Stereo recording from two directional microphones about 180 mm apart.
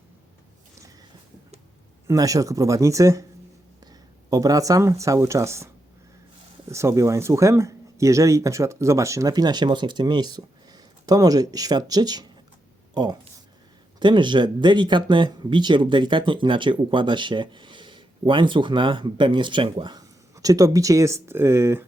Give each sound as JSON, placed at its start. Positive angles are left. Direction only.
{"t": 2.0, "sound": "speech", "side_deg": -20}
{"t": 4.3, "sound": "speech", "side_deg": -20}
{"t": 6.7, "sound": "speech", "side_deg": -15}